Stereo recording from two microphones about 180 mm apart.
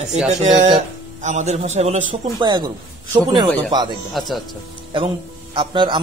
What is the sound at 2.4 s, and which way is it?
Speech, 25° right (ahead or behind).